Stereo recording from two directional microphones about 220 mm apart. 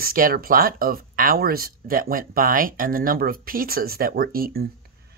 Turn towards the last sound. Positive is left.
turn(degrees=-45)  # may be behind; listen again after turning